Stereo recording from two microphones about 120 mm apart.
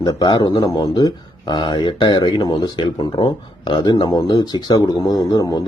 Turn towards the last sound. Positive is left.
turn(degrees=30)  # may be behind; listen again after turning